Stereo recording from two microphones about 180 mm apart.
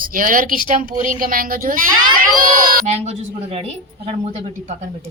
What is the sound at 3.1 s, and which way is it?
A woman's voice, 35° right (ahead or behind).